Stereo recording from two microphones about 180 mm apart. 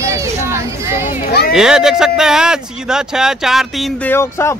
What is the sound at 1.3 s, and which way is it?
Speech, 60° left (ahead or behind).